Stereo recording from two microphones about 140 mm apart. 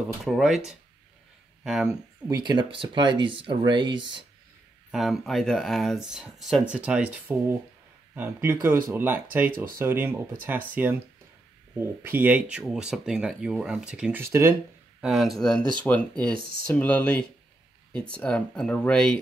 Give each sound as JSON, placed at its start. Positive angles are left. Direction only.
{"t": 0.2, "sound": "speech", "side_deg": -5}
{"t": 2.2, "sound": "speech", "side_deg": -35}
{"t": 4.9, "sound": "speech", "side_deg": 0}
{"t": 12.0, "sound": "speech", "side_deg": -15}
{"t": 14.2, "sound": "speech", "side_deg": -20}
{"t": 15.0, "sound": "speech", "side_deg": 0}